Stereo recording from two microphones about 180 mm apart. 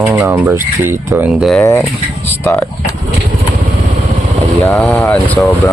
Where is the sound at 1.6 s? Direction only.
15° left (ahead or behind).